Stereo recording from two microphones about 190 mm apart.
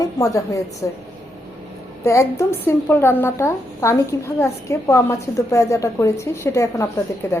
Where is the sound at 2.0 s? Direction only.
15° left (ahead or behind).